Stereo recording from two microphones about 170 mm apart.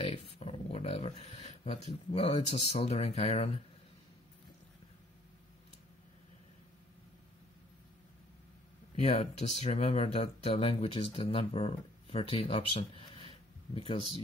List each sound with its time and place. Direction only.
0.0 s a sound: 35° left (ahead or behind)
1.9 s speech: 35° left (ahead or behind)
8.9 s speech: 40° left (ahead or behind)